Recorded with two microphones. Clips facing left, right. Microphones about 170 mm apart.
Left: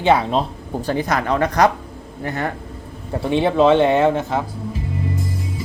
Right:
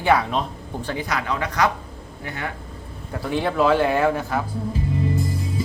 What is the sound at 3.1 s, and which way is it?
A man's voice, 25° left (ahead or behind).